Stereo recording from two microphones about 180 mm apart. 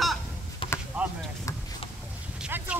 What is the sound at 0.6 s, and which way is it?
Chop, 30° left (ahead or behind).